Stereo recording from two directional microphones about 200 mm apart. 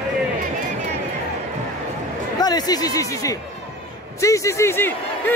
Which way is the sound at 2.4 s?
20° left (ahead or behind).